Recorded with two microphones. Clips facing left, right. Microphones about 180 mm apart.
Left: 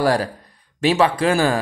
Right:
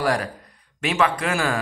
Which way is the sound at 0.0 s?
35° left (ahead or behind).